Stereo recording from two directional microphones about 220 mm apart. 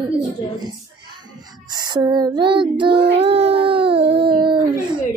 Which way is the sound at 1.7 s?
20° right (ahead or behind).